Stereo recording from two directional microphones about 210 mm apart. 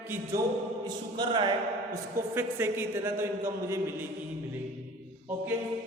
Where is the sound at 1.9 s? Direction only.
10° right (ahead or behind).